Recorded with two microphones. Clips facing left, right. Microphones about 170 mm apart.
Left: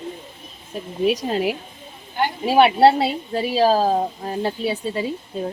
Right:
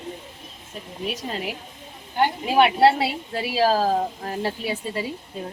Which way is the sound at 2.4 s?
35° left (ahead or behind).